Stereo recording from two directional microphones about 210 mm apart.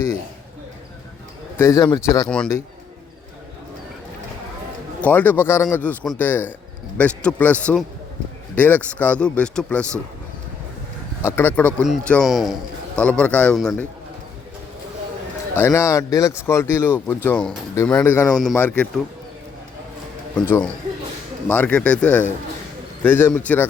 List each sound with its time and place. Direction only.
1.5 s speech: 15° left (ahead or behind)
4.9 s speech: 10° left (ahead or behind)
11.2 s speech: 10° left (ahead or behind)
15.5 s speech: 10° left (ahead or behind)
21.4 s speech: 5° left (ahead or behind)